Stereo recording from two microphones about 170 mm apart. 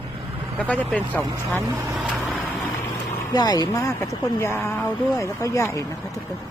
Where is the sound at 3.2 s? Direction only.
25° left (ahead or behind).